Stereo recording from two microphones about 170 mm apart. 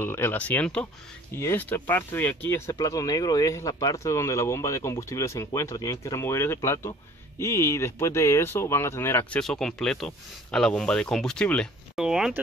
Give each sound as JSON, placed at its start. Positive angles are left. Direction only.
{"t": 0.0, "sound": "speech", "side_deg": 15}